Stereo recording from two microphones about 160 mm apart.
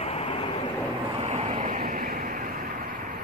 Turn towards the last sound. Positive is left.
turn(degrees=-60)  # may be behind; listen again after turning